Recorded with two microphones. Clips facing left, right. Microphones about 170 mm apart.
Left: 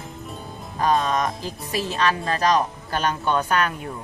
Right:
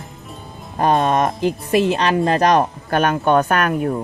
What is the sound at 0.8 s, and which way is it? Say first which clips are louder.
Speech: right 5 dB; 60° right (ahead or behind).